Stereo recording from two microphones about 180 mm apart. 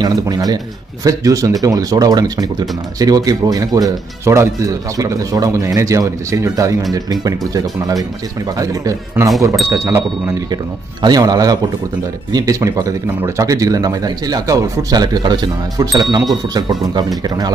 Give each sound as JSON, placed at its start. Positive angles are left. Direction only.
{"t": 0.0, "sound": "speech", "side_deg": -20}